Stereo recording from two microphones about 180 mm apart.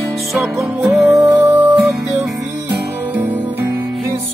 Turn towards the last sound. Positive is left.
turn(degrees=-10)  # may be behind; listen again after turning